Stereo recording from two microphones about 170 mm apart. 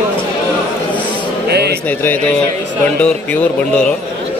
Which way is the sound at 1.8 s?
10° left (ahead or behind).